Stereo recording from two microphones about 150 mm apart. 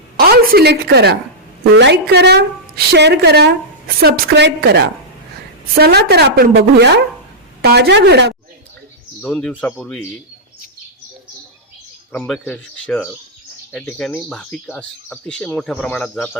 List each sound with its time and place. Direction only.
0.2 s a woman's voice: 90° right
9.2 s speech: 5° left (ahead or behind)
12.1 s speech: 10° left (ahead or behind)